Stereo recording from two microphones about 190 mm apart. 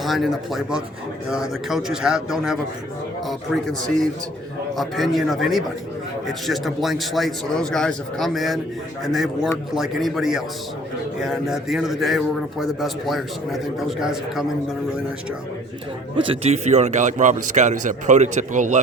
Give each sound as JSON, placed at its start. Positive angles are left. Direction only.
{"t": 0.0, "sound": "a man's voice", "side_deg": 0}
{"t": 4.8, "sound": "a man's voice", "side_deg": 0}
{"t": 16.1, "sound": "speech", "side_deg": -30}